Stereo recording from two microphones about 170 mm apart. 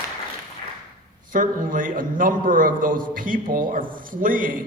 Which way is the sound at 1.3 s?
55° right (ahead or behind).